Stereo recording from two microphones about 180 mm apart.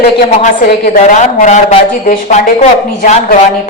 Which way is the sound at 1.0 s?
40° left (ahead or behind).